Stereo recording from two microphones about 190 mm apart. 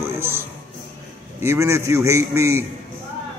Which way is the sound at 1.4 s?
15° right (ahead or behind).